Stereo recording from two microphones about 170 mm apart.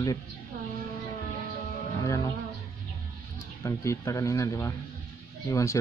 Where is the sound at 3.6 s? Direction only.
15° left (ahead or behind).